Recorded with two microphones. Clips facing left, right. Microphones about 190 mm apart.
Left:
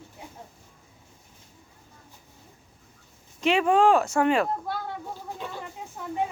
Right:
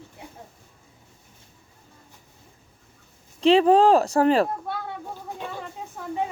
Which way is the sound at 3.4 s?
30° right (ahead or behind).